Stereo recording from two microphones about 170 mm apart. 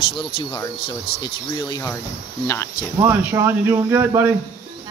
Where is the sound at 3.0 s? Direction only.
15° right (ahead or behind).